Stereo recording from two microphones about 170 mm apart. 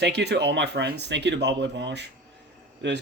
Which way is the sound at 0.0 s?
80° right.